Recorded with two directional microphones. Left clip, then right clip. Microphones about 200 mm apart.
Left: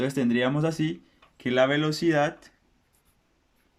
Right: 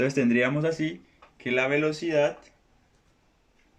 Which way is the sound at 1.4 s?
45° left (ahead or behind).